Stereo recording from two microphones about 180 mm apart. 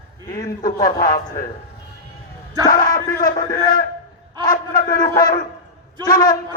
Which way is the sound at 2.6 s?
50° left (ahead or behind).